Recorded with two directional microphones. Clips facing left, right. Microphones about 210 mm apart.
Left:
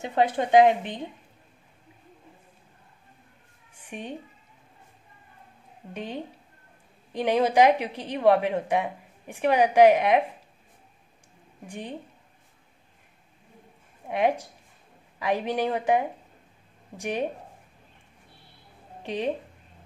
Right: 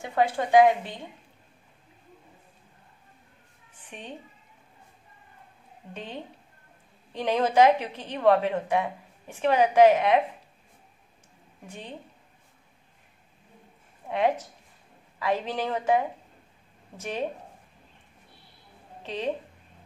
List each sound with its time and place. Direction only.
0.0 s a woman's voice: 20° left (ahead or behind)
3.7 s a sound: 10° left (ahead or behind)
5.9 s a woman's voice: 15° left (ahead or behind)
11.6 s a woman's voice: 15° left (ahead or behind)
14.0 s a woman's voice: 15° left (ahead or behind)
19.0 s a woman's voice: 15° left (ahead or behind)